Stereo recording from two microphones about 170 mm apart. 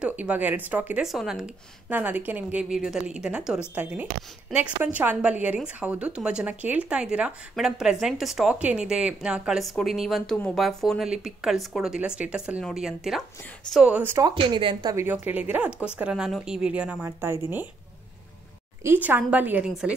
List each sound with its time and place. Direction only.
0.0 s speech: 10° right (ahead or behind)
14.3 s a woman's voice: 30° right (ahead or behind)
15.0 s speech: 10° right (ahead or behind)
18.8 s speech: 15° right (ahead or behind)